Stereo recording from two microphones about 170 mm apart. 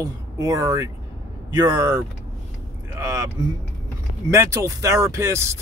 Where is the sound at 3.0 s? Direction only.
20° right (ahead or behind).